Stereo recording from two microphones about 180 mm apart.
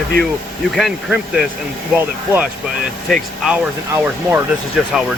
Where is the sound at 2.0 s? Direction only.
10° right (ahead or behind).